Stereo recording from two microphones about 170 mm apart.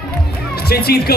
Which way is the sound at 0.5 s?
65° left (ahead or behind).